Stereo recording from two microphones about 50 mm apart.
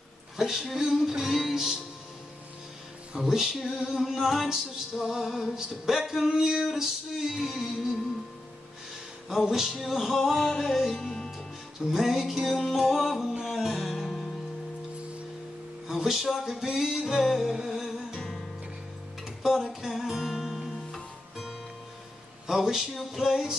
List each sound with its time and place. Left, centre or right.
0.4 s music: centre
3.1 s music: centre
9.3 s music: centre
11.8 s music: centre
15.9 s music: centre
19.2 s music: centre